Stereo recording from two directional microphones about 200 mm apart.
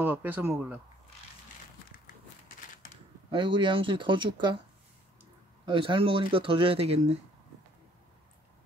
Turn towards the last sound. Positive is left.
turn(degrees=-30)  # may be behind; listen again after turning